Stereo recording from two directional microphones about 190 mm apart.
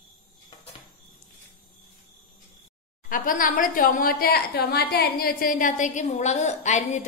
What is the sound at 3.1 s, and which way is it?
A woman's voice, 45° left (ahead or behind).